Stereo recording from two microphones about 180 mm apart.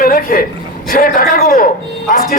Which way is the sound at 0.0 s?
50° left (ahead or behind).